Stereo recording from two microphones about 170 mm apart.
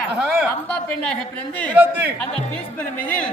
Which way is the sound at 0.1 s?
5° right (ahead or behind).